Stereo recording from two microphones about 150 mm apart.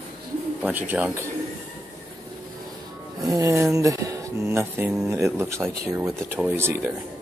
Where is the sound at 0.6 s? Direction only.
10° right (ahead or behind).